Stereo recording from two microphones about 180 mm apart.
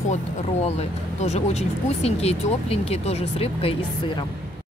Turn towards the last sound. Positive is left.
turn(degrees=35)  # may be behind; listen again after turning